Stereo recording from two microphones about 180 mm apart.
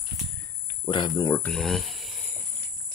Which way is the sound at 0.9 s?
25° left (ahead or behind).